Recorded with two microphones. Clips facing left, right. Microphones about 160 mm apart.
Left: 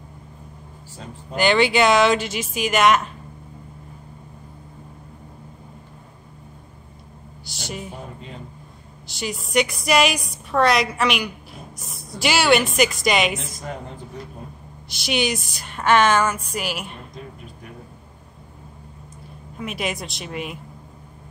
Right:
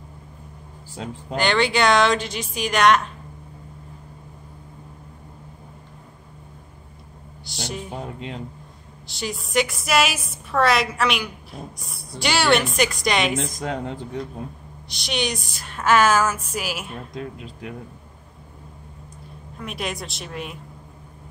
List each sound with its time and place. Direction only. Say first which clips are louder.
1.3 s a woman's voice: left 3 dB; centre (ahead or behind)
7.4 s a sound: right 1 dB; centre (ahead or behind)
9.0 s a woman's voice: left 1 dB; centre (ahead or behind)
13.6 s speech: right 5 dB; 90° right
14.9 s a woman's voice: left 3 dB; centre (ahead or behind)
19.6 s a woman's voice: left 2 dB; centre (ahead or behind)